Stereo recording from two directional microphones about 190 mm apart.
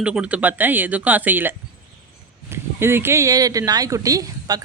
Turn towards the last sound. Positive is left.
turn(degrees=-20)  # may be behind; listen again after turning